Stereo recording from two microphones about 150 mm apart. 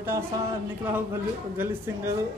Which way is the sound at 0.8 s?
15° right (ahead or behind).